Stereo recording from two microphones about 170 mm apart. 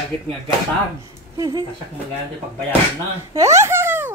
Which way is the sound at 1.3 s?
25° right (ahead or behind).